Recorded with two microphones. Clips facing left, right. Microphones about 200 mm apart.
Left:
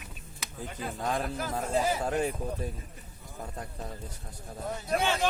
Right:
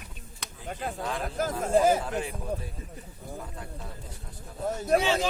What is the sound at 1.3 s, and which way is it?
Speech, 45° right (ahead or behind).